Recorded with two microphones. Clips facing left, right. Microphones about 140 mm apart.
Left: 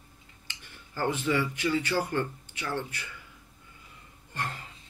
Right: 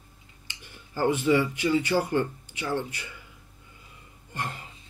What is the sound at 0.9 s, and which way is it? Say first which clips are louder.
Speech: right 5 dB; 15° right (ahead or behind).